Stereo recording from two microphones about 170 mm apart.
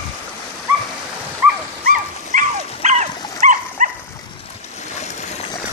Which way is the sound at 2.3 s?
45° right (ahead or behind).